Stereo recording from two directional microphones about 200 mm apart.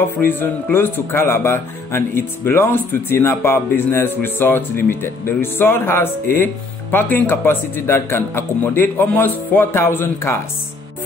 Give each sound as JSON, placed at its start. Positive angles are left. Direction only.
{"t": 0.4, "sound": "speech", "side_deg": 10}